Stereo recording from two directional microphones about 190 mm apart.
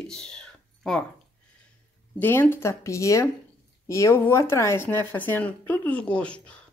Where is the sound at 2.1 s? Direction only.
10° left (ahead or behind).